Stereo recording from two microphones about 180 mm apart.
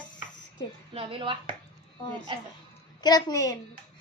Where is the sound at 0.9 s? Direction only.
30° right (ahead or behind).